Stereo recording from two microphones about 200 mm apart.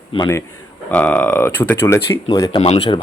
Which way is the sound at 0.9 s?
10° left (ahead or behind).